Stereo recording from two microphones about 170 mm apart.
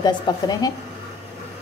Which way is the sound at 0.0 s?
25° left (ahead or behind).